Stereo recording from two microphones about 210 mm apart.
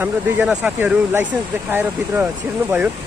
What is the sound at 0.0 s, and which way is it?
Speech, 5° right (ahead or behind).